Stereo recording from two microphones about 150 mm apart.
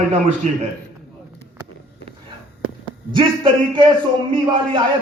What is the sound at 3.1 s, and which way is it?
A man's voice, 35° right (ahead or behind).